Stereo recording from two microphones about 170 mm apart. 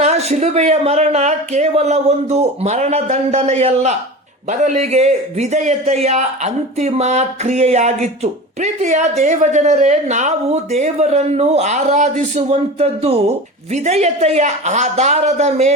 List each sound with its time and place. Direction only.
0.0 s a man's voice: 40° right (ahead or behind)